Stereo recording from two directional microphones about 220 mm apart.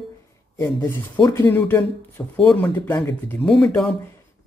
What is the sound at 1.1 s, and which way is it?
Speech, 20° left (ahead or behind).